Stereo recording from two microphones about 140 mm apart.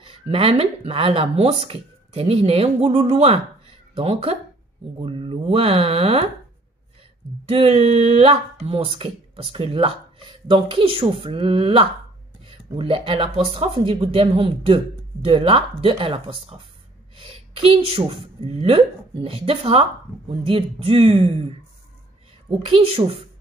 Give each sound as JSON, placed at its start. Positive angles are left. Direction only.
{"t": 0.0, "sound": "a woman's voice", "side_deg": -40}
{"t": 7.4, "sound": "a woman's voice", "side_deg": -45}
{"t": 22.7, "sound": "speech", "side_deg": -45}